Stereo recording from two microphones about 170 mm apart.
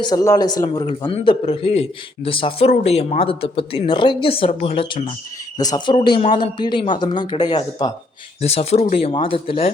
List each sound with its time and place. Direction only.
0.0 s a man's voice: 20° left (ahead or behind)
8.4 s a man's voice: 40° left (ahead or behind)